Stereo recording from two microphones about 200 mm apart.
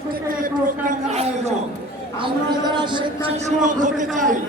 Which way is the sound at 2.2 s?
25° right (ahead or behind).